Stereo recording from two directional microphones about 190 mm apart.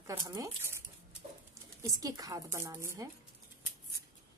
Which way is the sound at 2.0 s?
20° right (ahead or behind).